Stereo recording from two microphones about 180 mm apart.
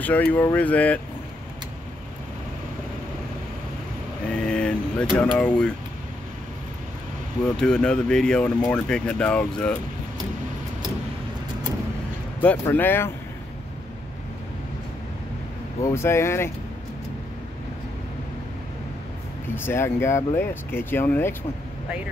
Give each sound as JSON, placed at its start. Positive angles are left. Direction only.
{"t": 0.0, "sound": "speech", "side_deg": 10}
{"t": 4.3, "sound": "speech", "side_deg": 5}
{"t": 7.5, "sound": "speech", "side_deg": 5}
{"t": 12.4, "sound": "speech", "side_deg": 10}
{"t": 15.8, "sound": "speech", "side_deg": 15}
{"t": 19.5, "sound": "speech", "side_deg": 10}